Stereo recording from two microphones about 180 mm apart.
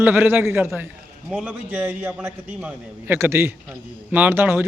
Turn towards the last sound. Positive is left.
turn(degrees=-10)  # may be behind; listen again after turning